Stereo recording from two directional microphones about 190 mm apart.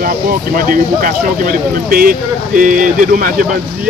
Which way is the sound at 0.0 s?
50° right (ahead or behind).